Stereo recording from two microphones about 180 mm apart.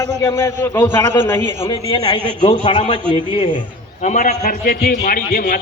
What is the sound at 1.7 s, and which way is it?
A man's voice, 25° left (ahead or behind).